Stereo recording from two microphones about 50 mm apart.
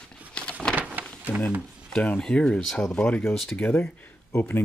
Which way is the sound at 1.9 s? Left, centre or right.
Left.